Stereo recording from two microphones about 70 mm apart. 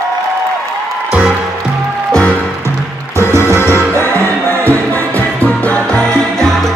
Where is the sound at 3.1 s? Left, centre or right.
Right.